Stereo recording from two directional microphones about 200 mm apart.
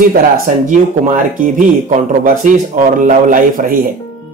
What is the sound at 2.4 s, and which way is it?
Speech, 40° right (ahead or behind).